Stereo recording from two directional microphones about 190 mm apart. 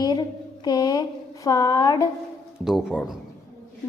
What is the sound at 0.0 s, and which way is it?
A woman's voice, 20° left (ahead or behind).